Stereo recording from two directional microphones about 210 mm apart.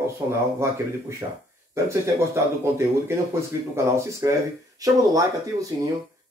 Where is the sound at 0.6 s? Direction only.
15° right (ahead or behind).